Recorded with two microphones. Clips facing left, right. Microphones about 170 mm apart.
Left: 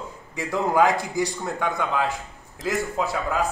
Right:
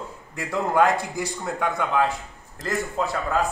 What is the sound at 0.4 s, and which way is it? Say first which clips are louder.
A man's voice: left 1 dB; centre (ahead or behind).